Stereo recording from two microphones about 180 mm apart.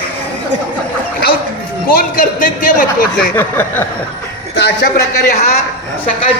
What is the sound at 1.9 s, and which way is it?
A man's voice, 50° left (ahead or behind).